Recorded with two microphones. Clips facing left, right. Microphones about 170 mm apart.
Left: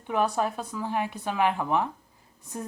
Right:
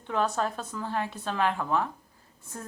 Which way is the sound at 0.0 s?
15° left (ahead or behind).